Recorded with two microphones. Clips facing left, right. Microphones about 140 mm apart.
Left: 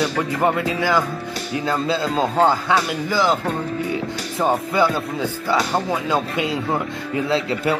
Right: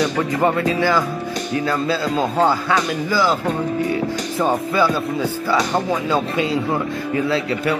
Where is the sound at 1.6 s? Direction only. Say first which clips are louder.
Left 1 dB; 25° left (ahead or behind).